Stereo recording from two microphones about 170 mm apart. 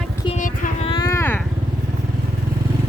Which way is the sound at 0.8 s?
30° left (ahead or behind).